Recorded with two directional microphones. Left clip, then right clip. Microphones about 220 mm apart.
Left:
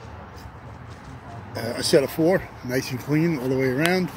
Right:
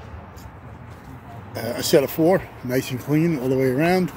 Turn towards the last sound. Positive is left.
turn(degrees=-15)  # may be behind; listen again after turning